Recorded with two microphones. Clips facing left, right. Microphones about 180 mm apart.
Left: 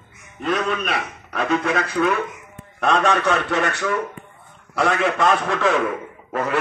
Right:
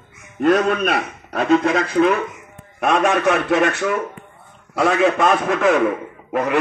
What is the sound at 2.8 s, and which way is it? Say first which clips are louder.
A man's voice: right 2 dB; 15° right (ahead or behind).